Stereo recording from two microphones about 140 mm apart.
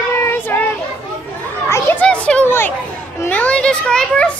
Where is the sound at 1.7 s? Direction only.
15° left (ahead or behind).